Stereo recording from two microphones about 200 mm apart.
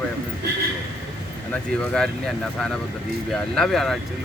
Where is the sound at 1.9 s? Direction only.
5° left (ahead or behind).